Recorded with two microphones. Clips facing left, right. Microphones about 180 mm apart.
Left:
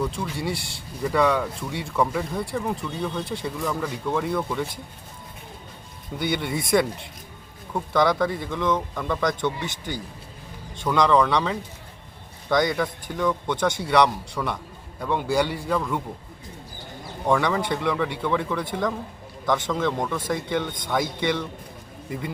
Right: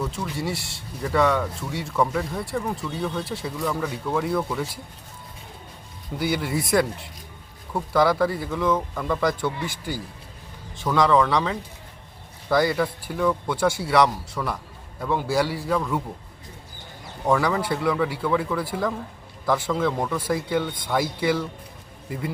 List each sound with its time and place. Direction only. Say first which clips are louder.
0.0 s speech: left 1 dB; 5° right (ahead or behind)
6.1 s speech: right 1 dB; 5° right (ahead or behind)
17.2 s speech: even; 5° right (ahead or behind)